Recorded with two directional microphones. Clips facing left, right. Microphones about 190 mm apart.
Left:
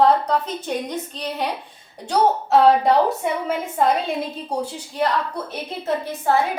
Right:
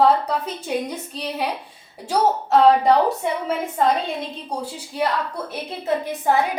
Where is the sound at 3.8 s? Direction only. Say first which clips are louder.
Left 1 dB; 5° left (ahead or behind).